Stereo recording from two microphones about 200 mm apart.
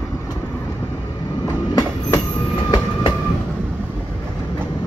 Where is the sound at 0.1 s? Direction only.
15° left (ahead or behind).